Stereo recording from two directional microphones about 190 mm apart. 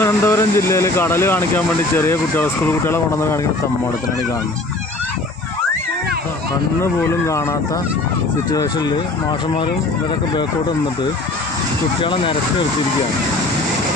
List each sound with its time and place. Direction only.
0.0 s speech: 15° left (ahead or behind)
6.8 s speech: 15° left (ahead or behind)
12.0 s speech: 25° left (ahead or behind)